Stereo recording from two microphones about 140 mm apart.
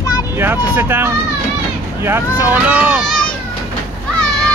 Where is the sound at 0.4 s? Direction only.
15° right (ahead or behind).